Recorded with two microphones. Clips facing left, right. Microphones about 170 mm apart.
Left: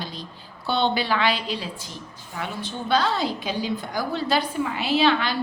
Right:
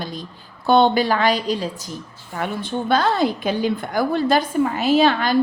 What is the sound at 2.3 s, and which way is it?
A woman's voice, 55° right (ahead or behind).